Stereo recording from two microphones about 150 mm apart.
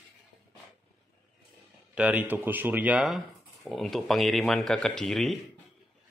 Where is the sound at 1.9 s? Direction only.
10° right (ahead or behind).